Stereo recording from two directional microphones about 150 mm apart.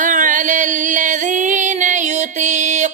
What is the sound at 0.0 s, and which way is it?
Music, 60° right (ahead or behind).